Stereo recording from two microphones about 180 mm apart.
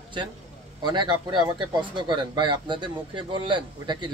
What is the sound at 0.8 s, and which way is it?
Speech, 25° right (ahead or behind).